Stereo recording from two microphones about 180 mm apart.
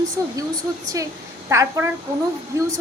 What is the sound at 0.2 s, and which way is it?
Speech, 15° right (ahead or behind).